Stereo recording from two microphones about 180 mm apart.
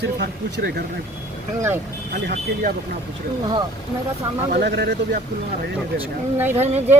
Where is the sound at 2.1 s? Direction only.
60° right (ahead or behind).